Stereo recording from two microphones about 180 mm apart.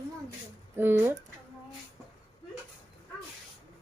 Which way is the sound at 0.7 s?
10° right (ahead or behind).